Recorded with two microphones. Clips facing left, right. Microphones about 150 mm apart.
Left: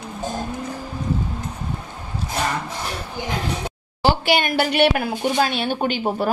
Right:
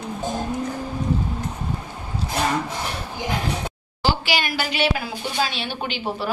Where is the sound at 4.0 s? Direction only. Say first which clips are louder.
Left 4 dB; 55° left (ahead or behind).